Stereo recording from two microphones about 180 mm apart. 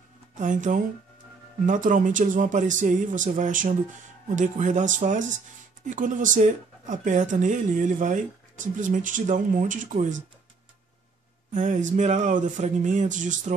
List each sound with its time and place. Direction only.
0.4 s speech: 45° right (ahead or behind)
11.5 s speech: 45° right (ahead or behind)